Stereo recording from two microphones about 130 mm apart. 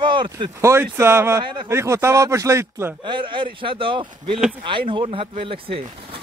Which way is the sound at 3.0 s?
40° right (ahead or behind).